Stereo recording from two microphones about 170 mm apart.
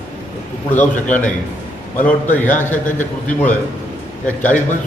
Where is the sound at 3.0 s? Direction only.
50° left (ahead or behind).